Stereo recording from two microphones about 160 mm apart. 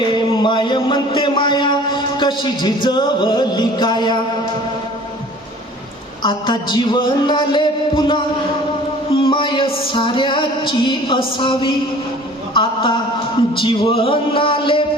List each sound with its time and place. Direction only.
0.4 s a man's voice: 30° left (ahead or behind)
6.2 s a man's voice: 30° left (ahead or behind)
9.1 s music: 30° left (ahead or behind)
12.5 s a man's voice: 30° left (ahead or behind)
13.5 s music: 35° left (ahead or behind)